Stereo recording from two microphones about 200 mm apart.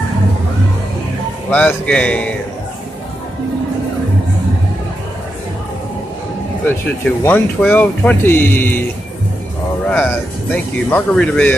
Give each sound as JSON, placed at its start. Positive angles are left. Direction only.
{"t": 1.5, "sound": "speech", "side_deg": 5}
{"t": 7.2, "sound": "speech", "side_deg": 10}
{"t": 9.8, "sound": "speech", "side_deg": 5}